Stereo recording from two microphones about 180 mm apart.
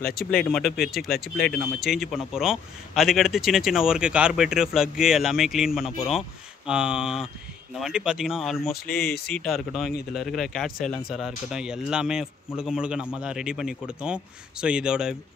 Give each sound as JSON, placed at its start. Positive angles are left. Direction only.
{"t": 0.0, "sound": "speech", "side_deg": 55}
{"t": 0.5, "sound": "speech", "side_deg": 0}